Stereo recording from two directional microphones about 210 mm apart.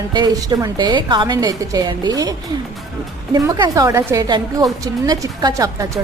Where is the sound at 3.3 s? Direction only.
15° right (ahead or behind).